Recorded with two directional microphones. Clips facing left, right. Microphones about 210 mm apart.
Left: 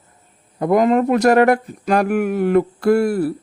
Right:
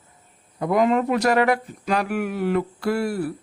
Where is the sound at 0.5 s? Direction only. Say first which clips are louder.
Left 5 dB; 45° left (ahead or behind).